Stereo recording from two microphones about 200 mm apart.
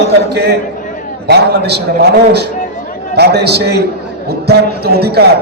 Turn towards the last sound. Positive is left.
turn(degrees=-55)  # may be behind; listen again after turning